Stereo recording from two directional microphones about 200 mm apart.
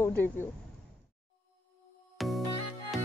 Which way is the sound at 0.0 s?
10° left (ahead or behind).